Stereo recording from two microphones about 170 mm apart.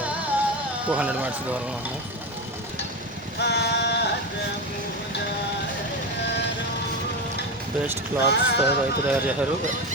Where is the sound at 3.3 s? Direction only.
75° left (ahead or behind).